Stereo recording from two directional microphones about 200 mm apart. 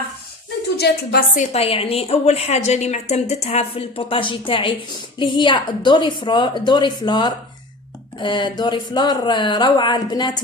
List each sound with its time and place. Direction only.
0.8 s a woman's voice: 55° left (ahead or behind)
1.4 s a woman's voice: 30° left (ahead or behind)